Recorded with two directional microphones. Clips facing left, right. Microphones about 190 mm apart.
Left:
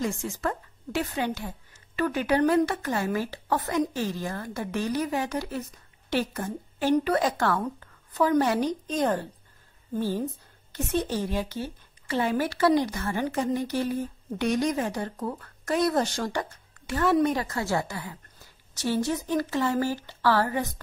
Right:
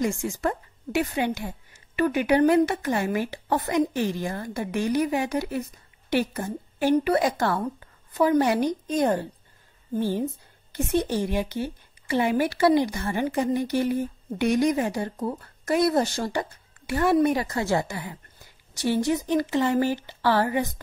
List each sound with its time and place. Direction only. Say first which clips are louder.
0.0 s a woman's voice: right 3 dB; 15° right (ahead or behind)